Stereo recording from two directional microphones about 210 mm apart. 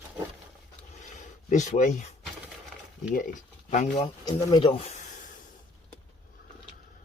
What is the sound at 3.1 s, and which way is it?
Speech, 40° left (ahead or behind).